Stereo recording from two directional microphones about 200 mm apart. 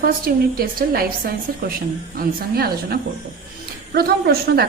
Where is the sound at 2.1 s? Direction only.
50° right (ahead or behind).